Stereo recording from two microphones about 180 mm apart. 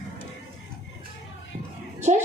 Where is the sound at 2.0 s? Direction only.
40° right (ahead or behind).